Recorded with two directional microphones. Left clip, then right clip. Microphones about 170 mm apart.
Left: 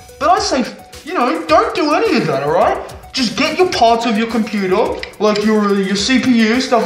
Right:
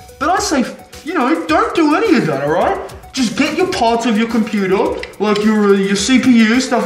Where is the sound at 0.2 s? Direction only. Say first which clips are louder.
Left 2 dB; 15° left (ahead or behind).